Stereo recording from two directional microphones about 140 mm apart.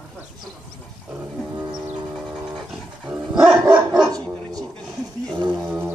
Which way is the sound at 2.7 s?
5° right (ahead or behind).